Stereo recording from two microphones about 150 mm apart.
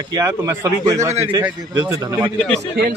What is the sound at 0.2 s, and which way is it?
Speech, 15° right (ahead or behind).